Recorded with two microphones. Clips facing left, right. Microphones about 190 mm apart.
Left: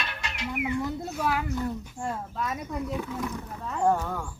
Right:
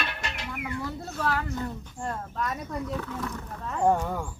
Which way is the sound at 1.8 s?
5° left (ahead or behind).